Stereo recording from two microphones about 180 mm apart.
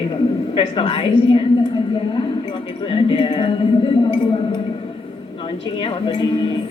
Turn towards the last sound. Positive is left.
turn(degrees=25)  # may be behind; listen again after turning